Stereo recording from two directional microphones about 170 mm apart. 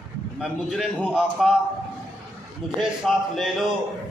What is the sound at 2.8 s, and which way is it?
Speech, centre (ahead or behind).